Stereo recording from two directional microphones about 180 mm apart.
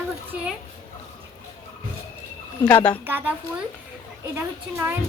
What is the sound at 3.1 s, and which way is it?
Speech, 10° right (ahead or behind).